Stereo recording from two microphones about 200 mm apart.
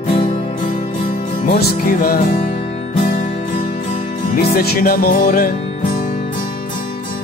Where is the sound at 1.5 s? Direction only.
50° left (ahead or behind).